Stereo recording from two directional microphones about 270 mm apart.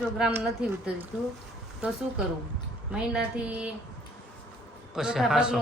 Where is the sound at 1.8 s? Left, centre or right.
Centre.